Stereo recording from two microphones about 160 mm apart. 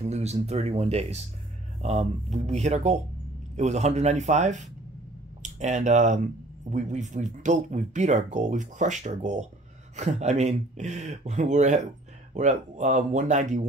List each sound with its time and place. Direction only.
0.0 s speech: 45° right (ahead or behind)